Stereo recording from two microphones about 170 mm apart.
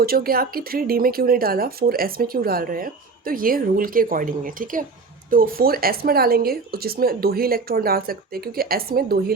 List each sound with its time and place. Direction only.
0.0 s speech: 60° right (ahead or behind)